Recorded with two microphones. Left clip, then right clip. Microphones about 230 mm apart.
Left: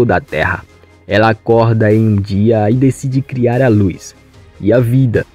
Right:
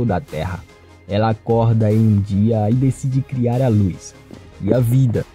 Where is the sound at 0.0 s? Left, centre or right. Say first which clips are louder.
Left 10 dB; left.